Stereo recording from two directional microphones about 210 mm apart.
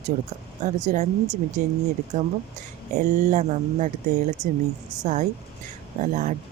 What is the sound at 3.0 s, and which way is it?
Speech, 35° right (ahead or behind).